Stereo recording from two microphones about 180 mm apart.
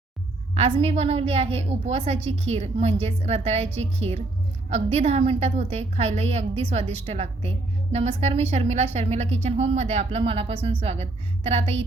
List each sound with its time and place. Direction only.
0.5 s a woman's voice: 35° right (ahead or behind)